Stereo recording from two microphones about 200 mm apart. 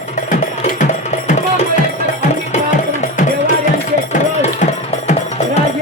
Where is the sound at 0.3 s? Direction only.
35° left (ahead or behind).